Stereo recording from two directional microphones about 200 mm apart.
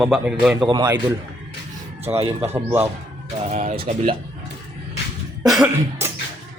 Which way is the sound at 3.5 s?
35° right (ahead or behind).